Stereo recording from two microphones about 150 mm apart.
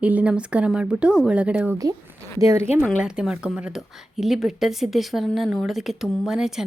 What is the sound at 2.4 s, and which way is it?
Speech, 20° right (ahead or behind).